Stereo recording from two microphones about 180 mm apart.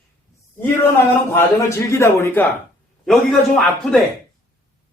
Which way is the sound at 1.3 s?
15° left (ahead or behind).